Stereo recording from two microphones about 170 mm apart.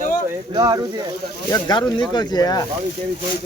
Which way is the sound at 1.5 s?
25° left (ahead or behind).